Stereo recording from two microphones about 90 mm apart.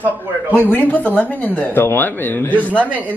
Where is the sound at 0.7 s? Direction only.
20° left (ahead or behind).